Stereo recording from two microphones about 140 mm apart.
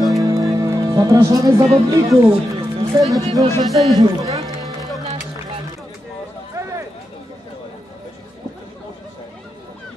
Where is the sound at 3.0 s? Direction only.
Centre (ahead or behind).